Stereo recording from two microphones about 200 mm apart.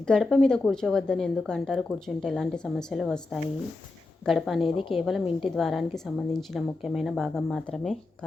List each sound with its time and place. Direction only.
0.1 s a woman's voice: centre (ahead or behind)
4.6 s a woman's voice: 25° left (ahead or behind)
5.4 s a woman's voice: centre (ahead or behind)